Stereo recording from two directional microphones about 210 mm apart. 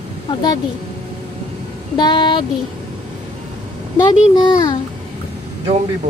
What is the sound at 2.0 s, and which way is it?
Speech, 20° left (ahead or behind).